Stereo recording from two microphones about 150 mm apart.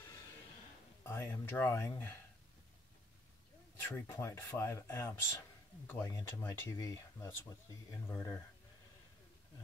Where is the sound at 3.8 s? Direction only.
15° left (ahead or behind).